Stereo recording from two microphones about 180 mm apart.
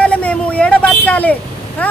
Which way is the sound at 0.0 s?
5° left (ahead or behind).